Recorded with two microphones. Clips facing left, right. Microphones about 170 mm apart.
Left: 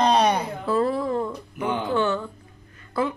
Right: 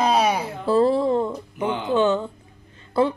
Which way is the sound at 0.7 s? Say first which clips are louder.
Right 5 dB; 30° right (ahead or behind).